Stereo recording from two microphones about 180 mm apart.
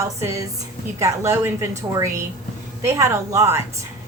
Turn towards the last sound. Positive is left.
turn(degrees=-15)  # may be behind; listen again after turning